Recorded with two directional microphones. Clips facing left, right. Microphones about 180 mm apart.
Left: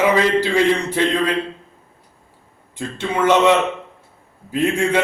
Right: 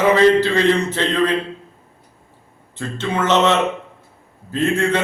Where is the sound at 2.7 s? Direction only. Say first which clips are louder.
Even; 10° left (ahead or behind).